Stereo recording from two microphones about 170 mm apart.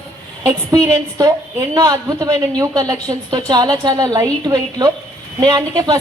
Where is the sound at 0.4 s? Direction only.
20° right (ahead or behind).